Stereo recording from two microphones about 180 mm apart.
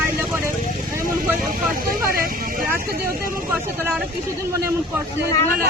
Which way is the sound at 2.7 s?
55° right (ahead or behind).